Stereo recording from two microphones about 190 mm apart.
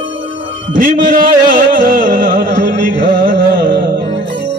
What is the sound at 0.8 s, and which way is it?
Music, 45° right (ahead or behind).